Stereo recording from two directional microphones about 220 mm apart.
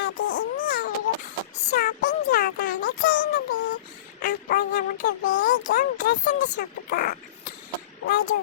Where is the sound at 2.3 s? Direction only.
45° left (ahead or behind).